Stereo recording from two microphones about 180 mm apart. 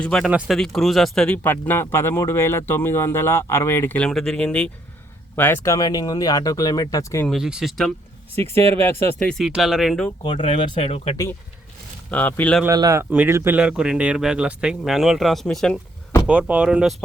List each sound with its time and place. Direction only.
0.0 s speech: 5° left (ahead or behind)
7.3 s speech: centre (ahead or behind)
8.7 s speech: 10° left (ahead or behind)
10.2 s speech: 30° left (ahead or behind)
12.1 s speech: 10° left (ahead or behind)
12.6 s speech: 20° right (ahead or behind); by 15.8 s 5° left (ahead or behind)
16.2 s speech: 5° right (ahead or behind)